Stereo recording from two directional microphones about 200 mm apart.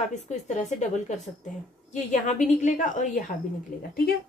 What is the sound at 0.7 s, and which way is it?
A woman's voice, 35° left (ahead or behind).